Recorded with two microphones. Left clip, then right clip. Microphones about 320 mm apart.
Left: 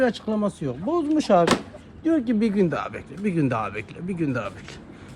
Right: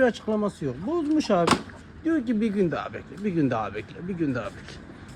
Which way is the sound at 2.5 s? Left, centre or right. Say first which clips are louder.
Left 1 dB; left.